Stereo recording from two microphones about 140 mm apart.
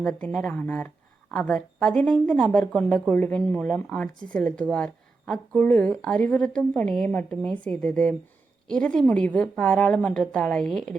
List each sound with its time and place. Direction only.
0.0 s speech: 5° left (ahead or behind)